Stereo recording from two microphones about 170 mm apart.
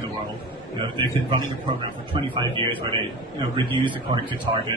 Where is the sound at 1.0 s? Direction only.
30° right (ahead or behind).